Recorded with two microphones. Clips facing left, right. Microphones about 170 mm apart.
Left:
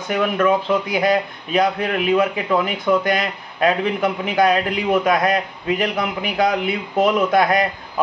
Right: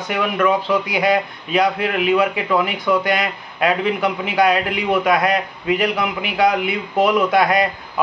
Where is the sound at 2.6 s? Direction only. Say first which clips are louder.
Even; 40° left (ahead or behind).